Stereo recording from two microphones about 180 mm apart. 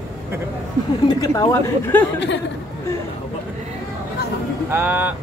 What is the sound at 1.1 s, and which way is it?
Speech, 20° left (ahead or behind).